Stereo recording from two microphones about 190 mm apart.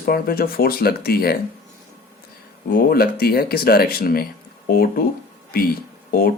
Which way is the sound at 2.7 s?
50° left (ahead or behind).